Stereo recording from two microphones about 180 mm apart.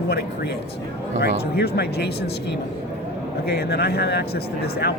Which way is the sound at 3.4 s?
60° left (ahead or behind).